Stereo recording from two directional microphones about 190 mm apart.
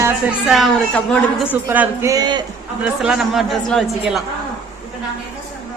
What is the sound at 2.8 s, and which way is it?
Speech, 5° right (ahead or behind).